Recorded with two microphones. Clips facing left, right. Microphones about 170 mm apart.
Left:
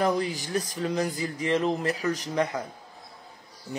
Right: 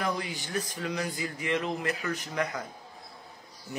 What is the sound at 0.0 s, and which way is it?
Speech, 35° left (ahead or behind).